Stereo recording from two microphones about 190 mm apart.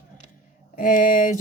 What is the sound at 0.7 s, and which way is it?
Speech, 45° left (ahead or behind).